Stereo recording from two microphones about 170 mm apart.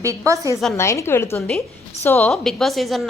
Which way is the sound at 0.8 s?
15° left (ahead or behind).